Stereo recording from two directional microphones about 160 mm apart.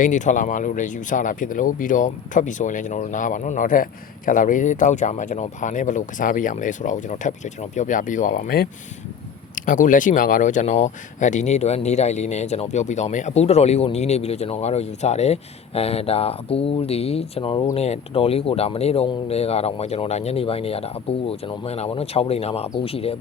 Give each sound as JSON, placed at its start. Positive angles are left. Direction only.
{"t": 0.0, "sound": "speech", "side_deg": 50}